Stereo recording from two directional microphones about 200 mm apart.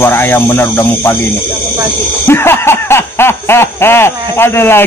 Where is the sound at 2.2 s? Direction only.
10° left (ahead or behind).